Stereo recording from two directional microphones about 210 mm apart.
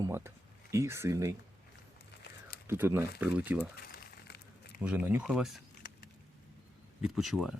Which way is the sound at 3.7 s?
50° left (ahead or behind).